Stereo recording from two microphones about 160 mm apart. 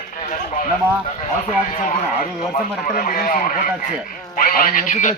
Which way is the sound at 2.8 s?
60° left (ahead or behind).